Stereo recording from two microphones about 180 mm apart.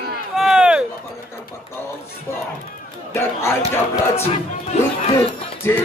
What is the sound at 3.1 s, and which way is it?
Speech, 15° left (ahead or behind).